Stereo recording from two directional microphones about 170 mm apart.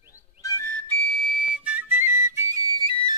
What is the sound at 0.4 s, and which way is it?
Whistle, 20° left (ahead or behind).